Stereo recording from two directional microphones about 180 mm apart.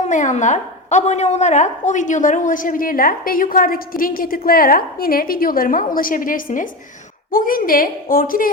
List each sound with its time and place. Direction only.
0.1 s a woman's voice: 45° left (ahead or behind)